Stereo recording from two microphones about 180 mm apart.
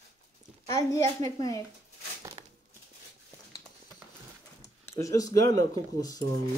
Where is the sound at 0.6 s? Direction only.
15° left (ahead or behind).